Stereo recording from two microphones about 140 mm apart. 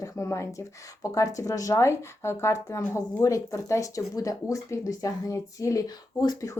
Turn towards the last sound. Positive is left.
turn(degrees=25)  # may be behind; listen again after turning